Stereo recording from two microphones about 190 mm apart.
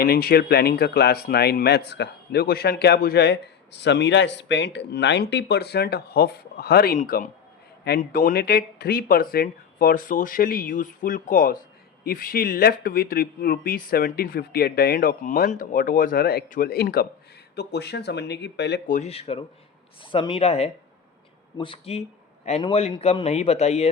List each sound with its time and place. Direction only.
0.0 s speech: 55° left (ahead or behind)
18.9 s speech: 35° left (ahead or behind)